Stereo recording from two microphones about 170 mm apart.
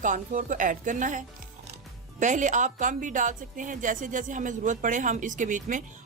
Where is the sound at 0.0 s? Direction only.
50° right (ahead or behind).